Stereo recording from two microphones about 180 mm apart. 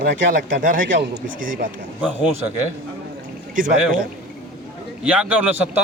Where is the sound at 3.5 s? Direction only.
50° right (ahead or behind).